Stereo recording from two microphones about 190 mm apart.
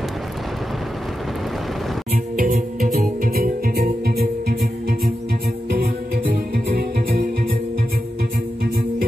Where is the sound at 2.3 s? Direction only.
50° right (ahead or behind).